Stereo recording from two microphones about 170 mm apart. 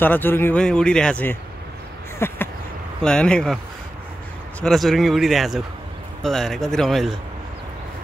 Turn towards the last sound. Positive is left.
turn(degrees=0)  # may be behind; listen again after turning